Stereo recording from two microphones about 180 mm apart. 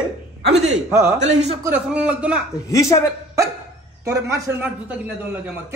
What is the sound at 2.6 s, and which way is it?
Speech, 20° left (ahead or behind).